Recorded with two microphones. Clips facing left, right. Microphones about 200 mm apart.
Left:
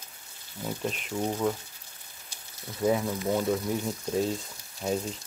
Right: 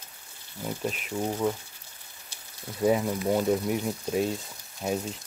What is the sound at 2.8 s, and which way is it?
Speech, 15° right (ahead or behind).